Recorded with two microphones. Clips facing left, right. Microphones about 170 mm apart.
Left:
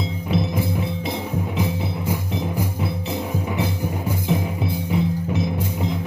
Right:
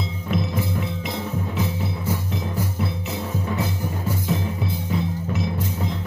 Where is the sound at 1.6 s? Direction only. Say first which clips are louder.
Left 2 dB; 10° left (ahead or behind).